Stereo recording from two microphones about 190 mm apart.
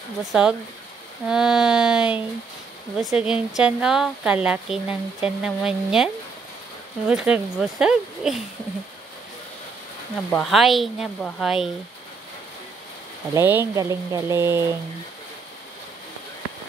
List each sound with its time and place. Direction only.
0.2 s speech: 5° right (ahead or behind)
7.1 s speech: 5° right (ahead or behind)
10.3 s speech: centre (ahead or behind)
13.3 s speech: 10° right (ahead or behind)